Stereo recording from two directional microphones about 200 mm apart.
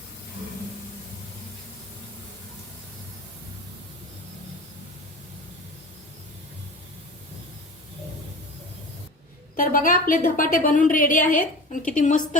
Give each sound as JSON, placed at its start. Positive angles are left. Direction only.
{"t": 9.6, "sound": "a woman's voice", "side_deg": 45}